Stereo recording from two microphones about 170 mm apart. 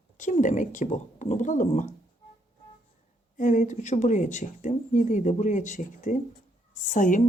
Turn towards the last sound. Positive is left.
turn(degrees=50)  # may be behind; listen again after turning